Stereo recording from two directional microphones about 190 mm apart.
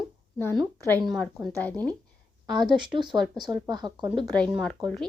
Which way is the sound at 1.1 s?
Centre (ahead or behind).